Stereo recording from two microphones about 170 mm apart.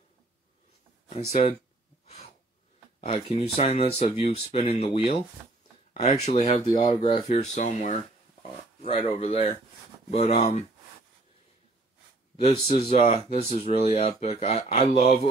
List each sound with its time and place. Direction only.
1.0 s speech: 40° left (ahead or behind)
2.0 s a sound: 35° left (ahead or behind)
3.0 s speech: 35° left (ahead or behind)
6.6 s speech: 25° left (ahead or behind)
12.6 s speech: 40° left (ahead or behind)